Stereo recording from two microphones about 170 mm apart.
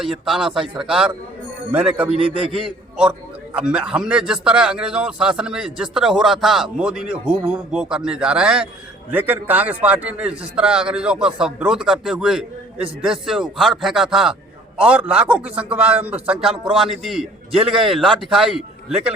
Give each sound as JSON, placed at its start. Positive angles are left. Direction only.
{"t": 0.0, "sound": "a man's voice", "side_deg": 0}